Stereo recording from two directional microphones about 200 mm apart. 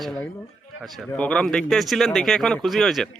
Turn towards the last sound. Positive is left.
turn(degrees=0)  # may be behind; listen again after turning